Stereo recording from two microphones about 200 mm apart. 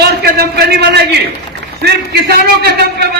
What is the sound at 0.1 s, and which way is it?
A man's voice, 55° right (ahead or behind).